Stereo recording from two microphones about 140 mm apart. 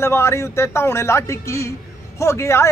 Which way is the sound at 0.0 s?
20° left (ahead or behind).